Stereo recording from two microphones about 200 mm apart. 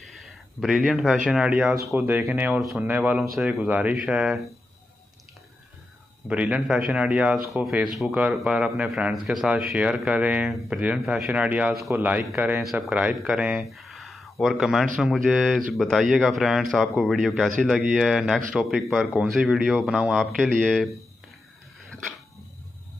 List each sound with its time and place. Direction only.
0.0 s speech: centre (ahead or behind)
6.2 s speech: 5° right (ahead or behind)